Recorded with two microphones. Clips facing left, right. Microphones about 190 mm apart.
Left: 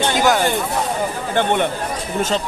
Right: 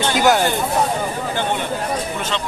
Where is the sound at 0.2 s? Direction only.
Centre (ahead or behind).